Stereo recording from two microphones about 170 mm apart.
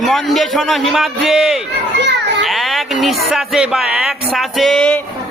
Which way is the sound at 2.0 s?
90° right.